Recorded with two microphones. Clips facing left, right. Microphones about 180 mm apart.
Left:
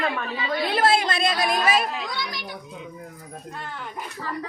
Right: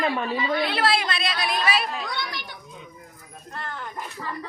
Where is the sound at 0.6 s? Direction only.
45° left (ahead or behind).